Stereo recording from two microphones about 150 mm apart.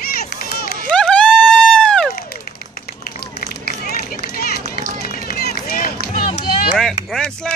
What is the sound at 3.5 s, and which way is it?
Run, 90° left.